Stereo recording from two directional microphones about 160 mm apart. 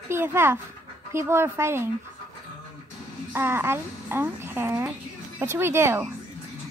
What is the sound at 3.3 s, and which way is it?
Speech, 15° right (ahead or behind).